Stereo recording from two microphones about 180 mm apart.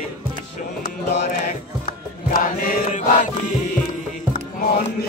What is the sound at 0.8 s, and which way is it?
Mantra, 40° left (ahead or behind).